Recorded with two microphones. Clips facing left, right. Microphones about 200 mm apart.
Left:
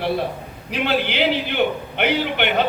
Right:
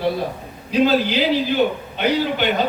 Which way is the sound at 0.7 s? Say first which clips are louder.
Right 5 dB; 65° left (ahead or behind).